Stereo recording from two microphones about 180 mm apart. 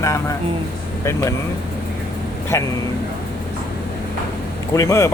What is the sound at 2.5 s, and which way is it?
Speech, 15° left (ahead or behind).